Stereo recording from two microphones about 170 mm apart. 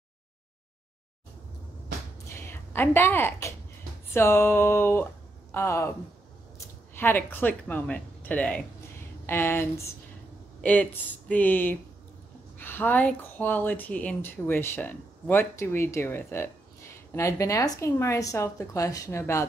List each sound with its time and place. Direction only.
2.2 s a sound: 15° left (ahead or behind)
4.1 s speech: 15° left (ahead or behind)
7.0 s speech: 10° left (ahead or behind)